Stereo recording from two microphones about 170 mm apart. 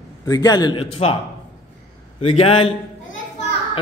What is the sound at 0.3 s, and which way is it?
Speech, 25° left (ahead or behind).